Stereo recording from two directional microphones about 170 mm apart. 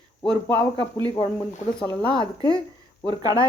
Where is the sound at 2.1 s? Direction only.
25° left (ahead or behind).